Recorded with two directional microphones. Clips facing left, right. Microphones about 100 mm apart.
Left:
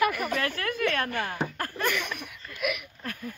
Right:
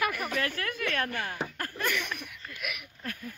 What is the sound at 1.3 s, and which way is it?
Laughter, 40° left (ahead or behind).